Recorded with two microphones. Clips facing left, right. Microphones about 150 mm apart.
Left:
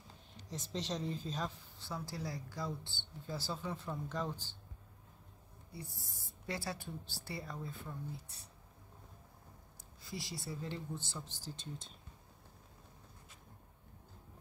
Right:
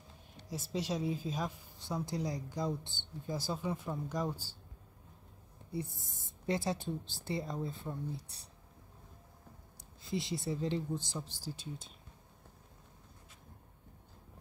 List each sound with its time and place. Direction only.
0.5 s a woman's voice: 10° right (ahead or behind)
5.7 s a woman's voice: 20° right (ahead or behind)
10.0 s a woman's voice: 20° right (ahead or behind)